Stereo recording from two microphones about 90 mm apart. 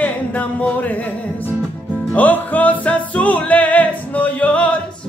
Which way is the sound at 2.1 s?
20° left (ahead or behind).